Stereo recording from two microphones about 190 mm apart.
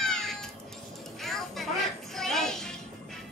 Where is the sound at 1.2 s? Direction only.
Centre (ahead or behind).